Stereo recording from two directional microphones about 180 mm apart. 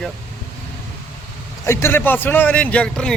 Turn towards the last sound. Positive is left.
turn(degrees=5)  # may be behind; listen again after turning